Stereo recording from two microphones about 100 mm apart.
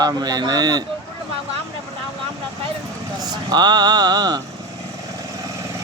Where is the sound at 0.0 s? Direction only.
40° right (ahead or behind).